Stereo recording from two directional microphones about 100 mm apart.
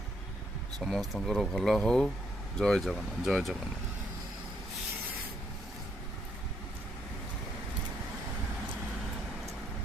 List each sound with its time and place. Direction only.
0.8 s speech: centre (ahead or behind)